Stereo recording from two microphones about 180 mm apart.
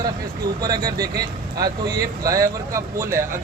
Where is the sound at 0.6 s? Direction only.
20° right (ahead or behind).